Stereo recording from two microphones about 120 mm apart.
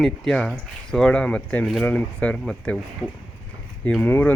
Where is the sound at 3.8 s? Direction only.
10° left (ahead or behind).